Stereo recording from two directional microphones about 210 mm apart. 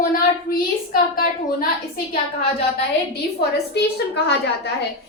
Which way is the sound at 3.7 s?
55° left (ahead or behind).